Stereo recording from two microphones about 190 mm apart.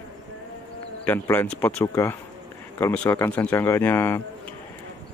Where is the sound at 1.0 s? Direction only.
10° left (ahead or behind).